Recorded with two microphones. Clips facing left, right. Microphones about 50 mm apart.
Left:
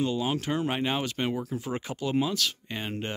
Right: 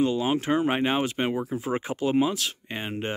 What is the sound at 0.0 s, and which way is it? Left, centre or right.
Speech, right.